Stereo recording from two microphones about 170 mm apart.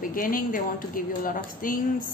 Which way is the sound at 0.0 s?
55° left (ahead or behind).